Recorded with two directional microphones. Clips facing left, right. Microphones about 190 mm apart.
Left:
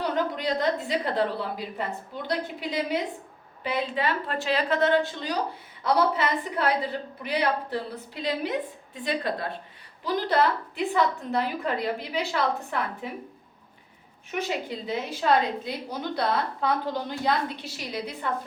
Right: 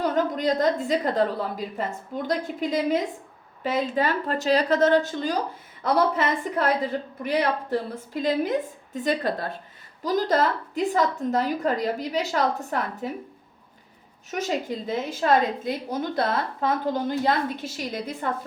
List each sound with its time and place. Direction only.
0.0 s a woman's voice: 45° right (ahead or behind)
14.3 s a woman's voice: 40° right (ahead or behind)